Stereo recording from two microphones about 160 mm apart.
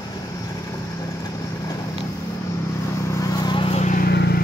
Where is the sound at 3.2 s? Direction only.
25° left (ahead or behind).